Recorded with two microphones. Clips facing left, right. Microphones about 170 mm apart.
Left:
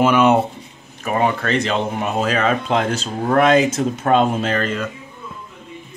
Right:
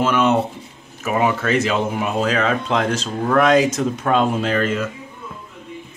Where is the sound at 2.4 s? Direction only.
30° left (ahead or behind).